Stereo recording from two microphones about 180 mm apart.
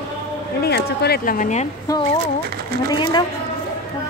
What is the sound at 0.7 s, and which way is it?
Speech, 65° left (ahead or behind).